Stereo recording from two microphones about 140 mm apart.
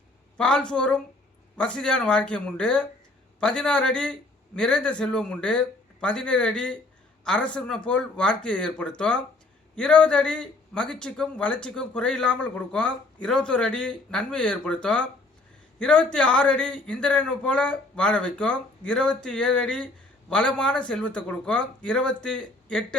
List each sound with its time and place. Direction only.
0.3 s a man's voice: 5° left (ahead or behind)